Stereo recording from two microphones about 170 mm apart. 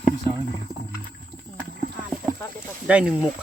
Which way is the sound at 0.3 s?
25° right (ahead or behind).